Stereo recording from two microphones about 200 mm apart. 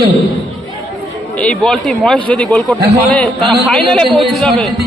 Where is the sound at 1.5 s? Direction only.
Centre (ahead or behind).